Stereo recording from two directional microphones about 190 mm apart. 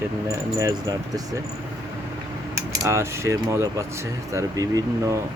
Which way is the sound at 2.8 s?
15° right (ahead or behind).